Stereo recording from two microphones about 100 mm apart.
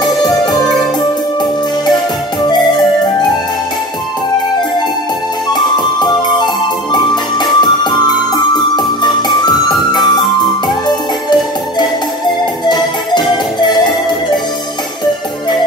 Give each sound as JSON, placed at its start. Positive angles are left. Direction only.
{"t": 0.0, "sound": "music", "side_deg": 45}
{"t": 5.5, "sound": "music", "side_deg": 45}
{"t": 12.6, "sound": "music", "side_deg": 45}